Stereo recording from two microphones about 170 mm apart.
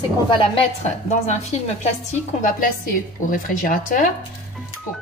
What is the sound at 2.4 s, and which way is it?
A woman's voice, 50° left (ahead or behind).